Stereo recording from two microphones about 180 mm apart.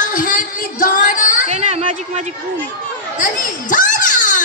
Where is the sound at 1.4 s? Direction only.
35° right (ahead or behind).